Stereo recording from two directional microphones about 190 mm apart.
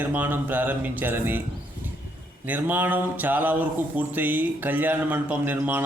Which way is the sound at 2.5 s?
10° right (ahead or behind).